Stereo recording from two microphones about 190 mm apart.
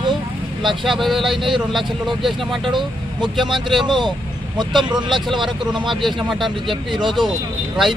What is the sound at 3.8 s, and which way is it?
Speech, 25° right (ahead or behind).